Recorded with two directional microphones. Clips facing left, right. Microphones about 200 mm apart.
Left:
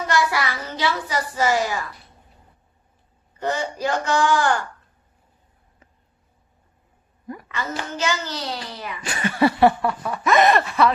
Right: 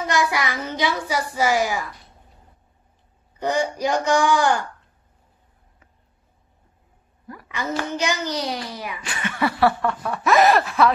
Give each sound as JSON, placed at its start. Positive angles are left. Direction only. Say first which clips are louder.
{"t": 0.0, "sound": "a child's voice", "louder": "even", "side_deg": -15}
{"t": 3.3, "sound": "a child's voice", "louder": "right 3 dB", "side_deg": -15}
{"t": 7.9, "sound": "a child's voice", "louder": "right 2 dB", "side_deg": -15}
{"t": 9.0, "sound": "a sound", "louder": "left 6 dB", "side_deg": 35}
{"t": 9.8, "sound": "snicker", "louder": "right 1 dB", "side_deg": 0}